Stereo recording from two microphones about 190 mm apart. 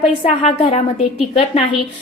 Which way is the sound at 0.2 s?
30° left (ahead or behind).